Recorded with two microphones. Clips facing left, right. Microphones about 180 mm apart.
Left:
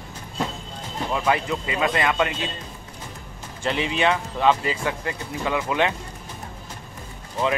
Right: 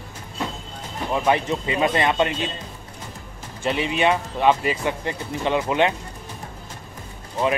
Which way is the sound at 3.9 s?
15° right (ahead or behind).